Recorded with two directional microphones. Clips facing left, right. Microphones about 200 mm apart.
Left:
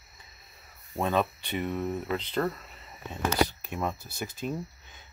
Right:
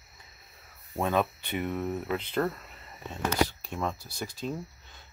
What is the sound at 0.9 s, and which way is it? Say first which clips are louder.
Speech: even; 10° right (ahead or behind).